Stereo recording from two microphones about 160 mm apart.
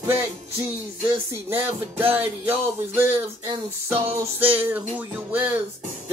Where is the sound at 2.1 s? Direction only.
15° right (ahead or behind).